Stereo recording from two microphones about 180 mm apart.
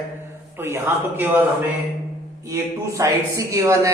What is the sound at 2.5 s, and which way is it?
A man's voice, 20° right (ahead or behind).